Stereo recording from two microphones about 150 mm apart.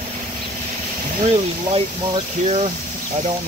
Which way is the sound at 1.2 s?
40° right (ahead or behind).